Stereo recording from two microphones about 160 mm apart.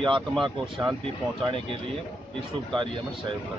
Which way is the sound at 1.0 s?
30° right (ahead or behind).